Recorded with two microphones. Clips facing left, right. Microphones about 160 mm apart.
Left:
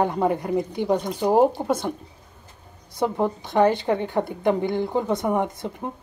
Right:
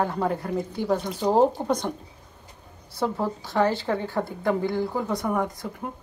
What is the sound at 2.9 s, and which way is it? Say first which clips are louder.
A woman's voice: left 3 dB; 20° left (ahead or behind).